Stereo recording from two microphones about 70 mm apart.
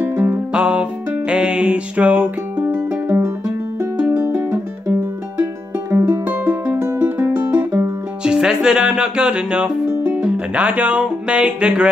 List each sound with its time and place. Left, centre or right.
0.0 s music: right
0.5 s music: centre